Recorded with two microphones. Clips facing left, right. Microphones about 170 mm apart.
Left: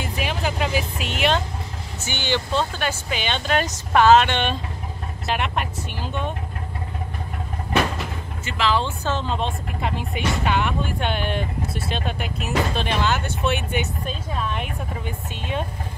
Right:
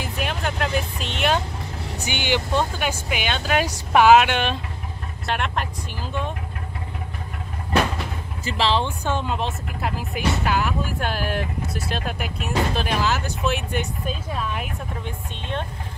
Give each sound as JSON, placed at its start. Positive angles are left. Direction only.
{"t": 0.0, "sound": "vehicle", "side_deg": 0}
{"t": 2.0, "sound": "speech", "side_deg": -15}
{"t": 8.5, "sound": "speech", "side_deg": -35}
{"t": 8.7, "sound": "speech", "side_deg": -15}